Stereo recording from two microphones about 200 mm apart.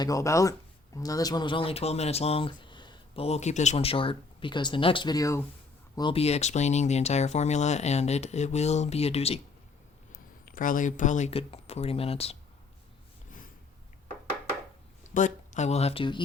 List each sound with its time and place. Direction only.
0.0 s speech: 15° left (ahead or behind)
6.0 s speech: 25° left (ahead or behind)
10.1 s speech: 45° left (ahead or behind)
15.1 s speech: 40° left (ahead or behind)